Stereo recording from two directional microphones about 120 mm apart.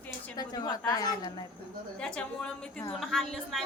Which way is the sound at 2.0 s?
10° left (ahead or behind).